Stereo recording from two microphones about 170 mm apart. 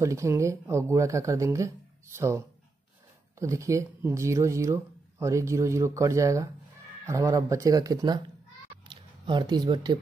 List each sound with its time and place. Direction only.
0.0 s speech: 15° right (ahead or behind)